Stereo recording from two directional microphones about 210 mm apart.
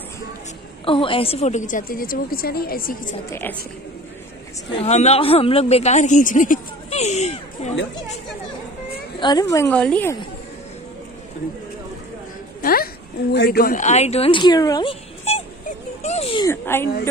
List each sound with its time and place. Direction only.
0.8 s speech: 25° left (ahead or behind); by 3.2 s 45° left (ahead or behind)
3.3 s a woman's voice: 10° left (ahead or behind)
4.7 s speech: 30° left (ahead or behind)
9.2 s a woman's voice: 20° left (ahead or behind)
12.6 s a woman's voice: 45° left (ahead or behind); by 15.4 s 25° left (ahead or behind)
16.0 s a sound: 30° left (ahead or behind)
16.4 s a woman's voice: 10° left (ahead or behind)